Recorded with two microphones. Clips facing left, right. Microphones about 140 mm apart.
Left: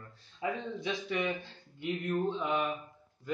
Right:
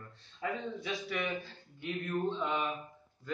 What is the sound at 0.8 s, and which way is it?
Speech, 20° left (ahead or behind).